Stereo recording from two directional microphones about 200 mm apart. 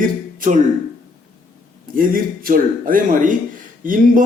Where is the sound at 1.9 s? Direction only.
45° right (ahead or behind).